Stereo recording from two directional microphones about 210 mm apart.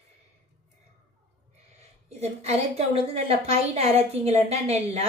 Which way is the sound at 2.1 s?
30° right (ahead or behind).